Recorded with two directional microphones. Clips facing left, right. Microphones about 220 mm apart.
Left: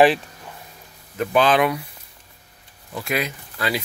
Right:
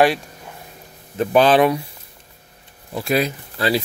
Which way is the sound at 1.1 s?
35° right (ahead or behind).